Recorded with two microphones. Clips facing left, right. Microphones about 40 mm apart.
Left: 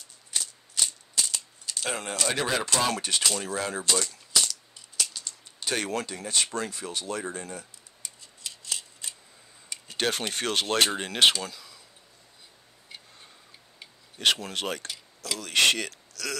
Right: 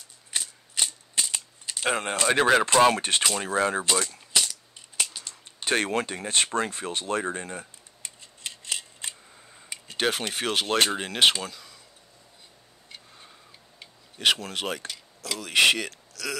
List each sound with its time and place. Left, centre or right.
0.3 s mechanisms: right
2.4 s speech: right
4.0 s a sound: right
9.8 s speech: centre
11.4 s a sound: centre
13.7 s speech: centre